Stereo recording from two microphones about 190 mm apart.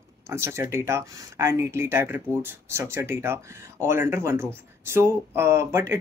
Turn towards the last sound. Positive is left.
turn(degrees=-15)  # may be behind; listen again after turning